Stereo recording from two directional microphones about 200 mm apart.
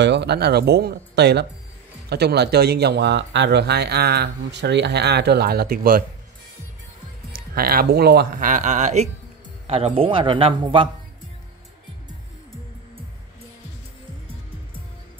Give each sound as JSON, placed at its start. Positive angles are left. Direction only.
{"t": 0.0, "sound": "speech", "side_deg": -60}
{"t": 7.3, "sound": "a man's voice", "side_deg": -45}